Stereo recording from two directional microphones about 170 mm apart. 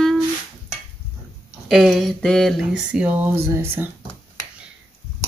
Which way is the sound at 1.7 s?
Centre (ahead or behind).